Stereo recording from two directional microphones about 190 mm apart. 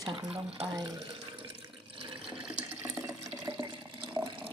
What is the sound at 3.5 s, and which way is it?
Water, 25° right (ahead or behind).